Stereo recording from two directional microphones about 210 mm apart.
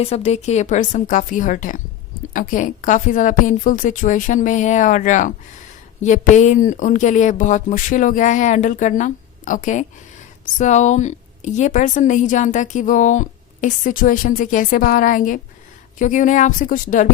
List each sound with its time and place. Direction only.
0.0 s a woman's voice: 30° left (ahead or behind)